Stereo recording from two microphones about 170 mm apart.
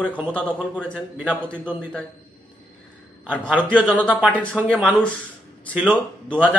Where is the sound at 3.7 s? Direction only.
5° left (ahead or behind).